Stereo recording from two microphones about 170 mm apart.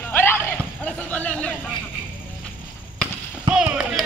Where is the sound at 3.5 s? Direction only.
5° right (ahead or behind).